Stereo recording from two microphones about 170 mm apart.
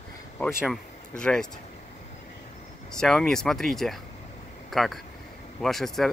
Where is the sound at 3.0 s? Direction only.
5° left (ahead or behind).